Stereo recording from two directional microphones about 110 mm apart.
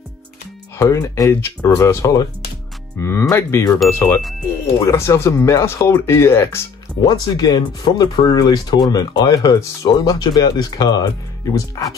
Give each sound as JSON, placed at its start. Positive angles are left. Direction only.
{"t": 0.7, "sound": "speech", "side_deg": 30}
{"t": 1.3, "sound": "speech", "side_deg": 20}
{"t": 7.1, "sound": "speech", "side_deg": 40}